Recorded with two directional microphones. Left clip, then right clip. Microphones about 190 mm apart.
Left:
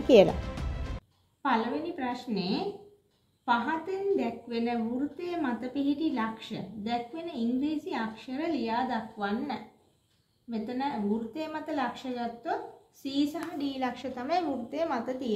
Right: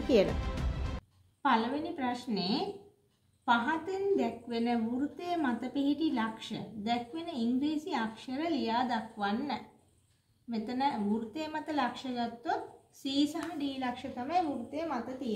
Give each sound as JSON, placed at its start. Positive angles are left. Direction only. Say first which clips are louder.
{"t": 0.4, "sound": "music", "louder": "even", "side_deg": 0}
{"t": 3.4, "sound": "a woman's voice", "louder": "left 1 dB", "side_deg": 0}
{"t": 14.1, "sound": "a woman's voice", "louder": "even", "side_deg": 30}